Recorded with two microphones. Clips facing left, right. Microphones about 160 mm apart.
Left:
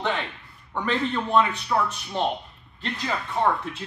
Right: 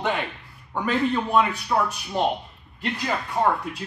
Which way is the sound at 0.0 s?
15° right (ahead or behind).